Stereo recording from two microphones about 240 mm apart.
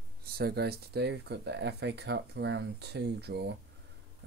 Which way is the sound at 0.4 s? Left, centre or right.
Right.